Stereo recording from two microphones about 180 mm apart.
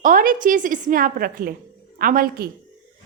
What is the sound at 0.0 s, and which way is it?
A woman's voice, 50° right (ahead or behind).